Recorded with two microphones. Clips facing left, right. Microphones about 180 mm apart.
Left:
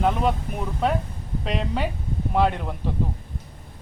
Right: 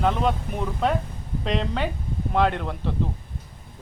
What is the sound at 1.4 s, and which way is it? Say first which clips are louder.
Speech: right 1 dB; 5° left (ahead or behind).